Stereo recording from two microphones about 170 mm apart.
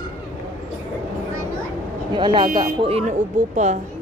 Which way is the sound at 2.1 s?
30° right (ahead or behind).